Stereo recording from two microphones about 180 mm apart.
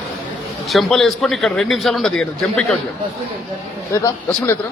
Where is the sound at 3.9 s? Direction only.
15° left (ahead or behind).